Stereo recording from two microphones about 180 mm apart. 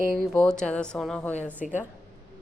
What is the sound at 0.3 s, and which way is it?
A woman's voice, 5° left (ahead or behind).